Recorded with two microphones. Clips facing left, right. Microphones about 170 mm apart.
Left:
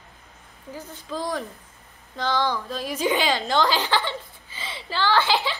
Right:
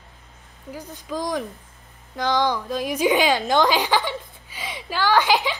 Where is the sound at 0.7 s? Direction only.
15° right (ahead or behind).